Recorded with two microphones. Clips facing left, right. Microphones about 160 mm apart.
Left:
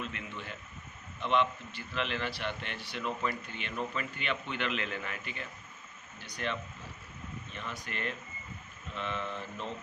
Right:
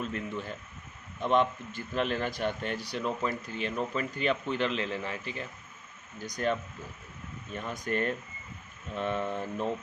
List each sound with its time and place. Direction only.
0.0 s speech: 40° right (ahead or behind)